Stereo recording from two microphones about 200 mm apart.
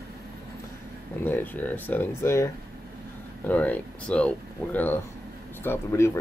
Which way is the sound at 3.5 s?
5° left (ahead or behind).